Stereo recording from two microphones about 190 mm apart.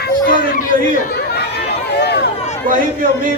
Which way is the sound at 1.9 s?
60° left (ahead or behind).